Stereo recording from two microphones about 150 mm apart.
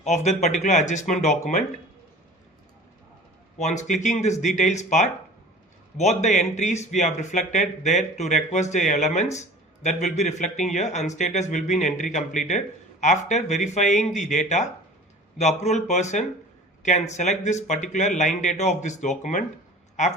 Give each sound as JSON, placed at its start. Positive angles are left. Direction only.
{"t": 0.0, "sound": "a man's voice", "side_deg": 45}
{"t": 3.6, "sound": "a man's voice", "side_deg": 50}